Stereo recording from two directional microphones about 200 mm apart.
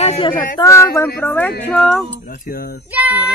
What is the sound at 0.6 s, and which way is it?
Speech, 15° left (ahead or behind).